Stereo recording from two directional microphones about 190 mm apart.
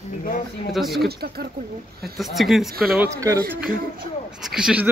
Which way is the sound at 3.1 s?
15° right (ahead or behind).